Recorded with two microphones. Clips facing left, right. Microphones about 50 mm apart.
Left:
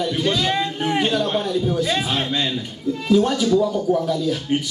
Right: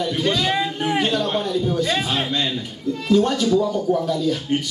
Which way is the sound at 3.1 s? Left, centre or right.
Centre.